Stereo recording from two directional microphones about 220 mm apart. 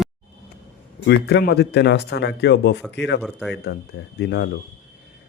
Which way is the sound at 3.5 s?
50° left (ahead or behind).